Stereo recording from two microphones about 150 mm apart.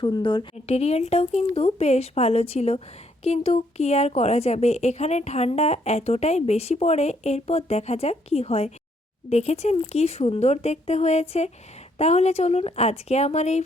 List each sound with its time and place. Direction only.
0.0 s a woman's voice: 30° left (ahead or behind); by 13.6 s 50° left (ahead or behind)